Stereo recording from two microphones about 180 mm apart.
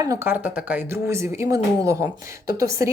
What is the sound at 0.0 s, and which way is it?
A woman's voice, 15° right (ahead or behind).